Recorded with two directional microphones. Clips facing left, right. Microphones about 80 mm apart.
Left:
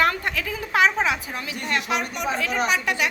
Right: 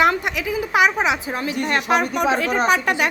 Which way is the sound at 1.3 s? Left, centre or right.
Right.